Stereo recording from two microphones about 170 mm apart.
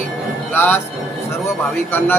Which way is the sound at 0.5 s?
10° left (ahead or behind).